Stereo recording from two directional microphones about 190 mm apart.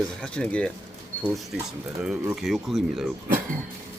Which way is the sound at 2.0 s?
5° right (ahead or behind).